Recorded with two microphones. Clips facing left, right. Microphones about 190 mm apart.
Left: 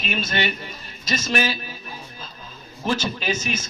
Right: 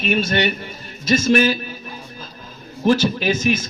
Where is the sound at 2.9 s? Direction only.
55° right (ahead or behind).